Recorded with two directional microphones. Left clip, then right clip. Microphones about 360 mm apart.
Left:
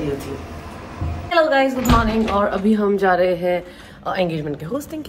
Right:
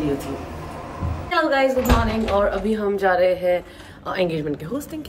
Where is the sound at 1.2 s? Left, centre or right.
Centre.